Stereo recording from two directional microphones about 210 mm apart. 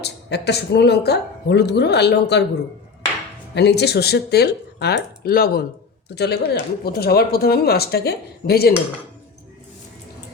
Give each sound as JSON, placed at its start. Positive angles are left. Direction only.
{"t": 0.0, "sound": "speech", "side_deg": 55}
{"t": 3.5, "sound": "speech", "side_deg": 55}